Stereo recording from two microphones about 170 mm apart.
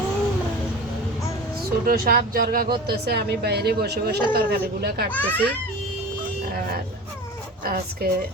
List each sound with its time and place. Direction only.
1.8 s speech: 55° right (ahead or behind)
2.8 s a woman's voice: 70° right (ahead or behind)
5.1 s a child's voice: 10° left (ahead or behind)
7.6 s speech: 60° right (ahead or behind)